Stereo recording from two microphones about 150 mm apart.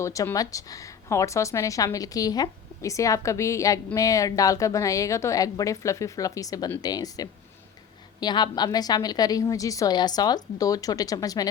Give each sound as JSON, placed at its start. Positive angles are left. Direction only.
{"t": 0.0, "sound": "a woman's voice", "side_deg": 20}